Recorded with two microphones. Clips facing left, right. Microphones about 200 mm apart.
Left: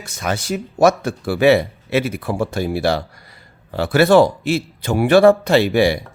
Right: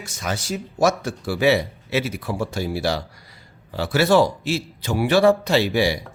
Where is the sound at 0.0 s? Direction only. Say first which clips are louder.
Left 4 dB; 60° left (ahead or behind).